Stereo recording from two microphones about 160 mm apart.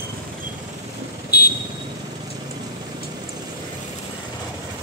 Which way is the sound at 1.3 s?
75° left (ahead or behind).